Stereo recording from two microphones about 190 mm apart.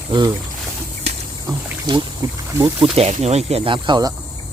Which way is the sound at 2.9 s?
35° right (ahead or behind).